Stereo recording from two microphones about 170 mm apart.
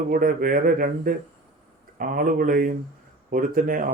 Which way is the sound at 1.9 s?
55° right (ahead or behind).